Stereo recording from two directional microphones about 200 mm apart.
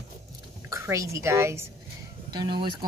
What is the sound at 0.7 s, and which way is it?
Speech, 15° right (ahead or behind).